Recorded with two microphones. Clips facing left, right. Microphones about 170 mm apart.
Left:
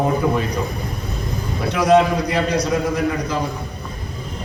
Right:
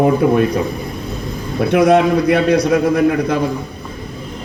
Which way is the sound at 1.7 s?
55° right (ahead or behind).